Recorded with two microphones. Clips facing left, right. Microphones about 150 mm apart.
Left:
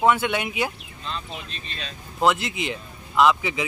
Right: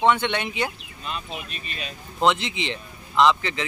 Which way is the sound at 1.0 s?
10° right (ahead or behind).